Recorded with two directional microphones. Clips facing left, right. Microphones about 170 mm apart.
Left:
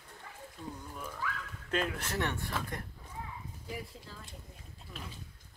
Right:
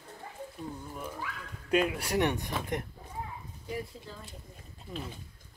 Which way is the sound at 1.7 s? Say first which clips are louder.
Right 6 dB; 10° right (ahead or behind).